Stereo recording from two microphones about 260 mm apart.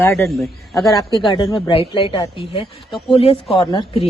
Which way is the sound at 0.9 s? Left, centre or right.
Centre.